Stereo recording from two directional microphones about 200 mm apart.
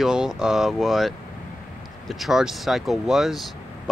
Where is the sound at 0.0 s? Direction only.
Centre (ahead or behind).